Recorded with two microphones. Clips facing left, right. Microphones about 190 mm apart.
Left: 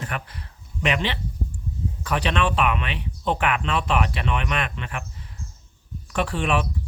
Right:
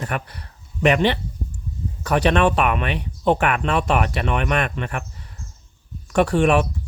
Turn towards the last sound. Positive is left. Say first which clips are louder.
# right 7 dB
turn(degrees=-45)  # may be behind; listen again after turning